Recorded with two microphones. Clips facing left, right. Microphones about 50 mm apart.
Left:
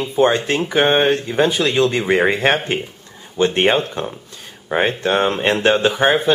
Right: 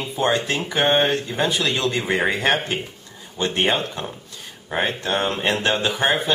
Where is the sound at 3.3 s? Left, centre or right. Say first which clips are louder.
Left 6 dB; left.